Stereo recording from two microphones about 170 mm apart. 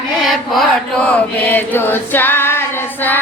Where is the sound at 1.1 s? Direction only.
10° left (ahead or behind).